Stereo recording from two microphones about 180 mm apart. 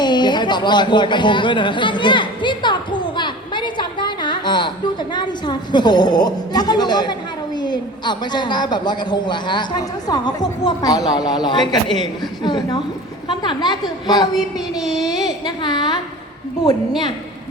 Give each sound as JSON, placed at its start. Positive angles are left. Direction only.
{"t": 0.0, "sound": "a woman's voice", "side_deg": 25}
{"t": 14.3, "sound": "child singing", "side_deg": 0}
{"t": 14.9, "sound": "a woman's voice", "side_deg": 20}